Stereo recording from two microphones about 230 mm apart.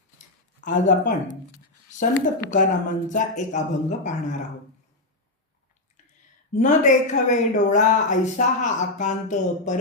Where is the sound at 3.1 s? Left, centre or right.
Left.